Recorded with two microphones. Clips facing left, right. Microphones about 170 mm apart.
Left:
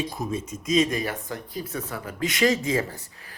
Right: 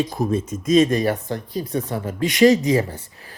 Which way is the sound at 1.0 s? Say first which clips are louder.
Right 9 dB; 35° right (ahead or behind).